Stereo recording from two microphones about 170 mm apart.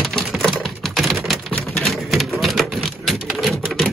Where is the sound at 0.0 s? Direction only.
Centre (ahead or behind).